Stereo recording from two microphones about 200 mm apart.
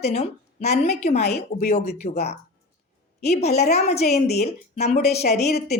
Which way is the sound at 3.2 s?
35° left (ahead or behind).